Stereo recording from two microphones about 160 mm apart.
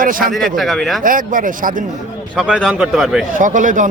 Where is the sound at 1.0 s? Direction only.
60° right (ahead or behind).